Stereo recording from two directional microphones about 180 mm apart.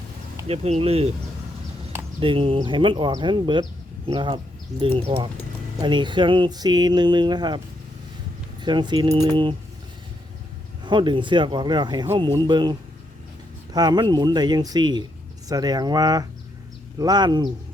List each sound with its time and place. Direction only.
0.4 s speech: 35° right (ahead or behind)
2.2 s speech: 30° right (ahead or behind)
8.6 s speech: 25° right (ahead or behind)
10.8 s speech: 25° right (ahead or behind)
13.7 s speech: 25° right (ahead or behind)